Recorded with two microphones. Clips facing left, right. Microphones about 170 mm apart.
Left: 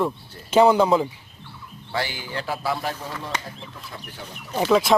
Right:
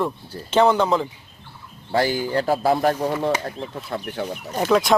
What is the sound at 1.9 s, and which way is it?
Speech, 40° right (ahead or behind).